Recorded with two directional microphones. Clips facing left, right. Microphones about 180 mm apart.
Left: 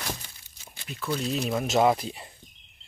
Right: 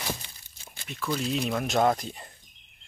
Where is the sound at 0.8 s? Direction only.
Centre (ahead or behind).